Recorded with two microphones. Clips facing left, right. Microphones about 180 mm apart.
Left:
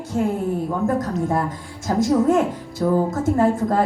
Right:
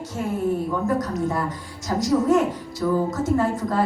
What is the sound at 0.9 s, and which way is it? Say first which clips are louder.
A woman's voice: left 3 dB; 50° left (ahead or behind).